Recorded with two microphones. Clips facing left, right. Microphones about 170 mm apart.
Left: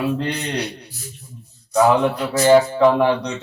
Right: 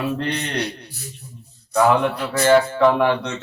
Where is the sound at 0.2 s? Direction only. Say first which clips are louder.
Left 1 dB; 10° left (ahead or behind).